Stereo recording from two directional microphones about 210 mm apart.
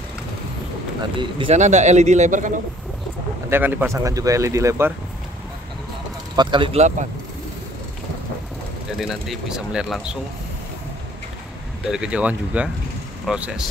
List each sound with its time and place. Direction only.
1.1 s speech: 25° right (ahead or behind)
3.4 s speech: 10° right (ahead or behind)
6.3 s speech: 20° right (ahead or behind)
8.9 s speech: centre (ahead or behind)
11.8 s speech: 5° right (ahead or behind)